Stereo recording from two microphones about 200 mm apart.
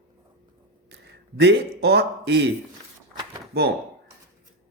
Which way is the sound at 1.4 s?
55° right (ahead or behind).